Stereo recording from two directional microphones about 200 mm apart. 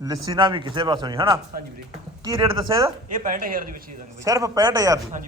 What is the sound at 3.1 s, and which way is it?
Speech, 40° right (ahead or behind).